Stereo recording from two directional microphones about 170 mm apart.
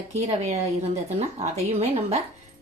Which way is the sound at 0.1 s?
40° right (ahead or behind).